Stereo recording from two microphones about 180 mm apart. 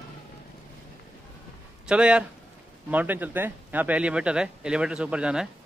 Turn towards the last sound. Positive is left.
turn(degrees=-5)  # may be behind; listen again after turning